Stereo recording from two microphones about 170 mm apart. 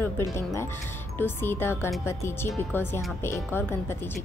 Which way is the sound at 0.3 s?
15° left (ahead or behind).